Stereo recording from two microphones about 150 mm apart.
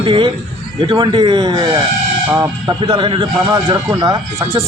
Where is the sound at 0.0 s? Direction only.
35° right (ahead or behind).